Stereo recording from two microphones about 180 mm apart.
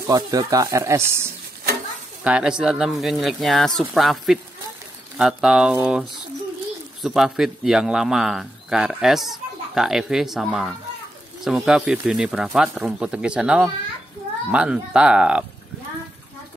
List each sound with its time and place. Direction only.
0.0 s speech: 20° right (ahead or behind)
2.2 s speech: 5° right (ahead or behind)